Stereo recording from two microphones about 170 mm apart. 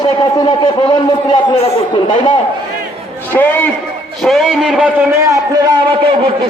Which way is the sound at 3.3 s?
10° left (ahead or behind).